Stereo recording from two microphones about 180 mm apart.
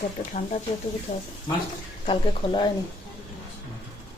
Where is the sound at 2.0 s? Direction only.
25° left (ahead or behind).